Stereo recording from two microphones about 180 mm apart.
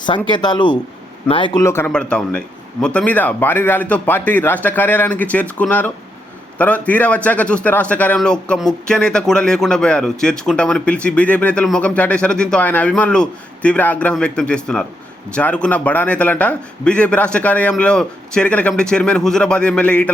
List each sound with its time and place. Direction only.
0.3 s speech: 25° left (ahead or behind)
1.6 s a man's voice: 15° left (ahead or behind)